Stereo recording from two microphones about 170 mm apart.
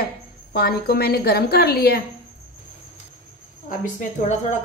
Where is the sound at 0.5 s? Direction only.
65° left (ahead or behind).